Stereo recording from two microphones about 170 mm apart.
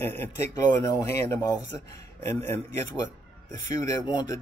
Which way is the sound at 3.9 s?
25° left (ahead or behind).